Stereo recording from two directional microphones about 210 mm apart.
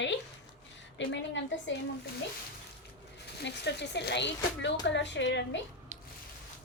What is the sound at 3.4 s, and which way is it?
Speech, 55° left (ahead or behind).